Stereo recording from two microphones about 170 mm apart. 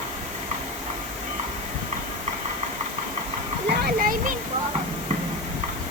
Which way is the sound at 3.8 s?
55° right (ahead or behind).